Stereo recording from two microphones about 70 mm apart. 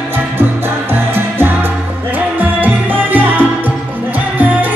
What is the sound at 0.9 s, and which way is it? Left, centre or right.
Music, right.